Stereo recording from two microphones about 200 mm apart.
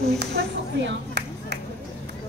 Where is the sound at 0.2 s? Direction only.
55° right (ahead or behind).